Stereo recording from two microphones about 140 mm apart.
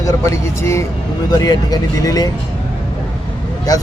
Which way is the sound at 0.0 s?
20° left (ahead or behind).